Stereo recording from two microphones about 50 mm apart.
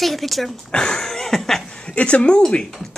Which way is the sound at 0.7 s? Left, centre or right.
Centre.